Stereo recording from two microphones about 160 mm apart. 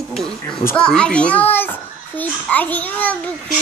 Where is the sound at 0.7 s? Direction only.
5° left (ahead or behind).